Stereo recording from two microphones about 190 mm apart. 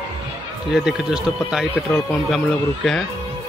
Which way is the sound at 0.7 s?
5° right (ahead or behind).